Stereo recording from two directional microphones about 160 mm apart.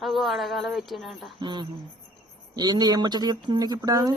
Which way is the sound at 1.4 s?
30° right (ahead or behind).